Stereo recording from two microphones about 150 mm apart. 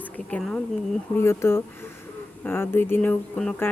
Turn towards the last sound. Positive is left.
turn(degrees=10)  # may be behind; listen again after turning